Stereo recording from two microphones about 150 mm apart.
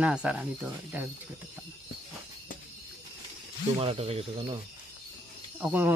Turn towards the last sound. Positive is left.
turn(degrees=-15)  # may be behind; listen again after turning